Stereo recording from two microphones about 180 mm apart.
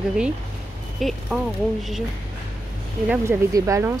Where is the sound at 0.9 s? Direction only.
Centre (ahead or behind).